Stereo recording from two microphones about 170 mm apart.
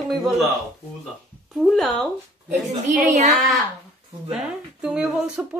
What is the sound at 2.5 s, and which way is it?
Speech, 40° right (ahead or behind).